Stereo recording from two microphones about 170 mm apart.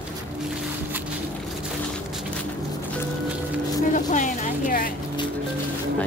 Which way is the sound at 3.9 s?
50° left (ahead or behind).